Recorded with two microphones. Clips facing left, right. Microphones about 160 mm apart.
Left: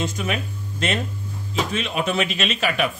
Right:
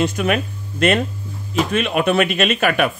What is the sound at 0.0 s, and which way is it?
Speech, 65° right (ahead or behind).